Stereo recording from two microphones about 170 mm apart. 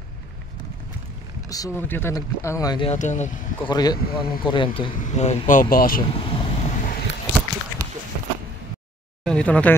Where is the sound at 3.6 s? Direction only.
25° left (ahead or behind).